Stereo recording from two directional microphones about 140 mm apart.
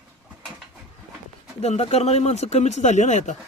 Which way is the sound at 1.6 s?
50° left (ahead or behind).